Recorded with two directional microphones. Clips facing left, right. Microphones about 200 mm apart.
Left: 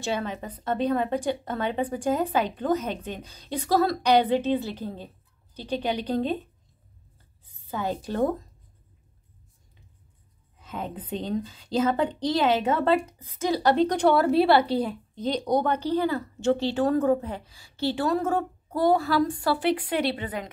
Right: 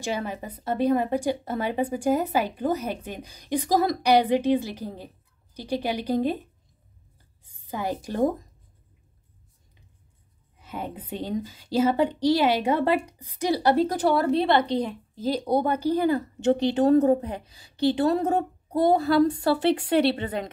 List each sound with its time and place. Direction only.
0.0 s a woman's voice: 10° right (ahead or behind)
7.4 s a woman's voice: 10° right (ahead or behind)
10.6 s a woman's voice: 10° right (ahead or behind); by 20.2 s 25° right (ahead or behind)
20.2 s a woman's voice: 40° right (ahead or behind)